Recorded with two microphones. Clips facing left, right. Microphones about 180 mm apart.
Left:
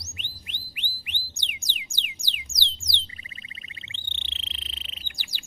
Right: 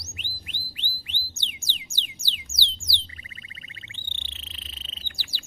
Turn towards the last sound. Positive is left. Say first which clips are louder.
# right 1 dB
turn(degrees=15)  # may be behind; listen again after turning